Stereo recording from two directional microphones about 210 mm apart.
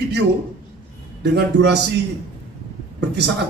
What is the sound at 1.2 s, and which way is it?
Speech, 50° right (ahead or behind).